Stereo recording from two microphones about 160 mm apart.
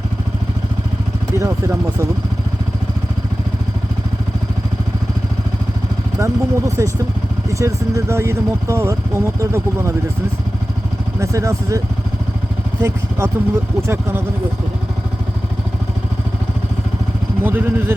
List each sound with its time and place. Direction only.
1.4 s speech: 20° right (ahead or behind)
6.1 s speech: 20° right (ahead or behind)
11.2 s speech: 20° right (ahead or behind)
12.8 s speech: 15° right (ahead or behind)
17.4 s speech: 10° right (ahead or behind)